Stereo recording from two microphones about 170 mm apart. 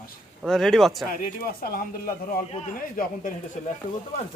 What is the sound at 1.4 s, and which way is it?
Speech, 60° left (ahead or behind).